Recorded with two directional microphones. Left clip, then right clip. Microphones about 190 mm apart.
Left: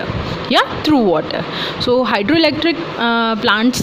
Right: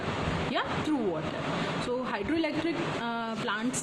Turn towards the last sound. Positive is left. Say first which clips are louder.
# left 17 dB
turn(degrees=50)  # may be behind; listen again after turning